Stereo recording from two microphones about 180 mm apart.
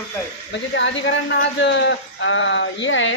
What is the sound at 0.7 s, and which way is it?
Speech, 90° left.